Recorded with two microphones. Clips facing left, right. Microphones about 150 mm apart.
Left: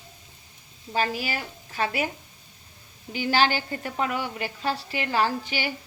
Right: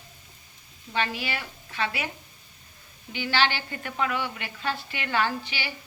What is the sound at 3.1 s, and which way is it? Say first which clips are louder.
A woman's voice: left 3 dB; 40° left (ahead or behind).